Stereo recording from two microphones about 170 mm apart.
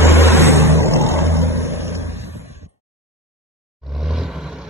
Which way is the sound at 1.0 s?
15° left (ahead or behind).